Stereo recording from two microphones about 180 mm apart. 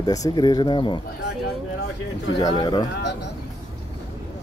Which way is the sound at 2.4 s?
25° left (ahead or behind).